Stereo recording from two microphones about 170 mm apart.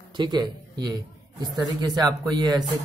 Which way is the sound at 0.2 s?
25° right (ahead or behind).